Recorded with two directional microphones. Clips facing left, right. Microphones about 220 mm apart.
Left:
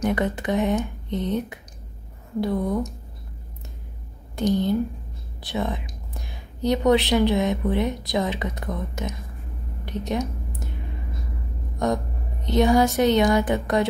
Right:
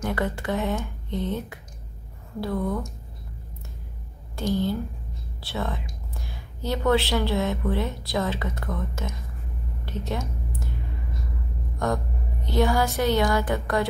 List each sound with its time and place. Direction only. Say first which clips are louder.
0.0 s a woman's voice: left 4 dB; 20° left (ahead or behind)
4.4 s a woman's voice: left 4 dB; 20° left (ahead or behind)
11.8 s music: left 3 dB; 20° left (ahead or behind)